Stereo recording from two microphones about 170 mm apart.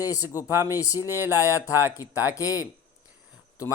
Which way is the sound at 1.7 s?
10° right (ahead or behind).